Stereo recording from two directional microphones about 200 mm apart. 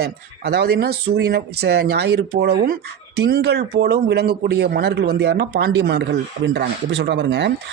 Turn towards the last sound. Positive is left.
turn(degrees=-60)  # may be behind; listen again after turning